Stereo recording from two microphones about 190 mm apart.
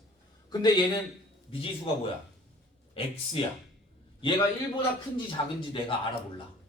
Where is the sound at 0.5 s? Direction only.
20° left (ahead or behind).